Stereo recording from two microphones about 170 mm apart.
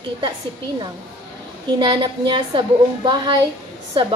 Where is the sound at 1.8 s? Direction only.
25° right (ahead or behind).